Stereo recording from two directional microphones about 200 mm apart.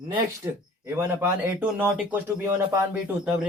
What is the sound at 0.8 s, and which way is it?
A man's voice, 10° right (ahead or behind).